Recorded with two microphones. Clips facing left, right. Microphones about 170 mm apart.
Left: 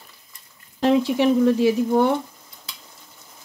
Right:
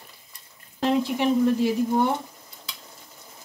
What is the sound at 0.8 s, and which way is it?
Speech, 85° left.